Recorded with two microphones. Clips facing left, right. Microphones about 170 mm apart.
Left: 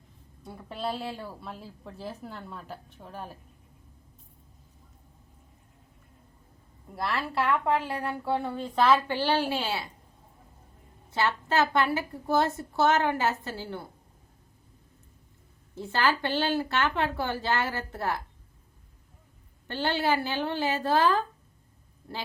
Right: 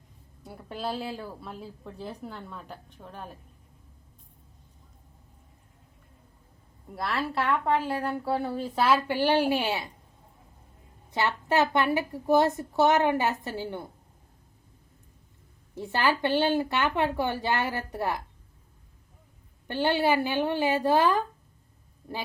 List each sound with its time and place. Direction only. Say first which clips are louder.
0.4 s a woman's voice: even; centre (ahead or behind)
6.9 s a woman's voice: even; centre (ahead or behind); by 9.8 s 15° right (ahead or behind)
11.1 s a woman's voice: right 1 dB; 15° right (ahead or behind)
15.7 s a woman's voice: right 1 dB; 15° right (ahead or behind)
19.6 s a woman's voice: right 3 dB; 15° right (ahead or behind)